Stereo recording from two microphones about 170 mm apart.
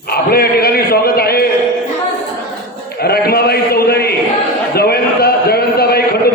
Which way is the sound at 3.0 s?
65° left (ahead or behind).